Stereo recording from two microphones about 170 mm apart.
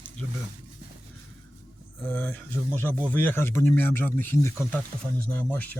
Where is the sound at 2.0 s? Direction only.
10° left (ahead or behind).